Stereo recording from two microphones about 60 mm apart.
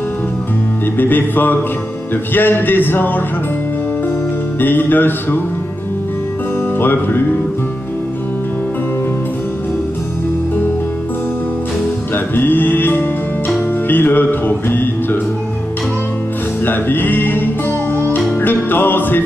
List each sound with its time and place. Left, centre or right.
0.9 s music: left
4.6 s music: left
6.8 s music: left
12.4 s music: left
16.6 s music: left